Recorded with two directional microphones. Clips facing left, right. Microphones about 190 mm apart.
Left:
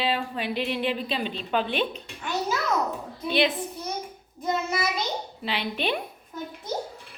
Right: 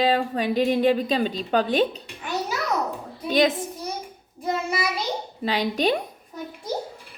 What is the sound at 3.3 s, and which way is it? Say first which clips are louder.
Speech: right 4 dB; 45° right (ahead or behind).